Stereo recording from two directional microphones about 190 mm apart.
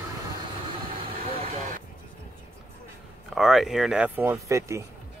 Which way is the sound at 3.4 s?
Centre (ahead or behind).